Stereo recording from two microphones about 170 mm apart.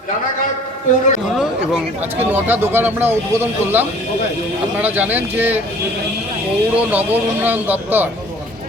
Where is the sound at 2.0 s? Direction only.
10° right (ahead or behind).